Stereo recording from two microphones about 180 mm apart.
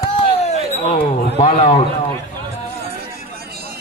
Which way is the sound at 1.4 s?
40° left (ahead or behind).